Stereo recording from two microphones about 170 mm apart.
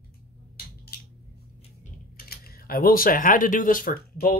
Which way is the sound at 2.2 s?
60° left (ahead or behind).